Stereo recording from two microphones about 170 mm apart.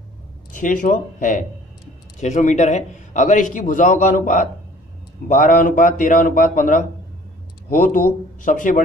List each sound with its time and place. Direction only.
0.5 s a man's voice: 50° left (ahead or behind)